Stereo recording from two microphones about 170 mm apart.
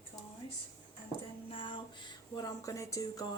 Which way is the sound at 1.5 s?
30° left (ahead or behind).